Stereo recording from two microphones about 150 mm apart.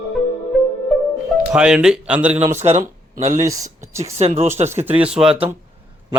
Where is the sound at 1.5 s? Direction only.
5° right (ahead or behind).